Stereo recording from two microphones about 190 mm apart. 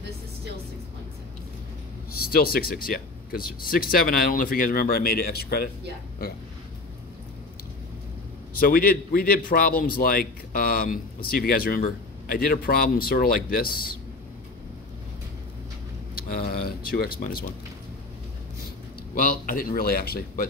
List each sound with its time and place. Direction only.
2.3 s a man's voice: 50° left (ahead or behind)
8.5 s a man's voice: 50° left (ahead or behind)
16.2 s a man's voice: 50° left (ahead or behind)
19.1 s a man's voice: 50° left (ahead or behind)